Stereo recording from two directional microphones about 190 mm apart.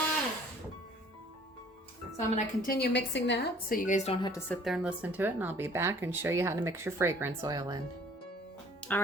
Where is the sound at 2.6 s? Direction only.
55° left (ahead or behind); by 4.3 s 30° left (ahead or behind).